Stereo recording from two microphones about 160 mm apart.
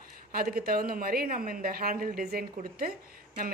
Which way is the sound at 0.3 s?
70° right (ahead or behind).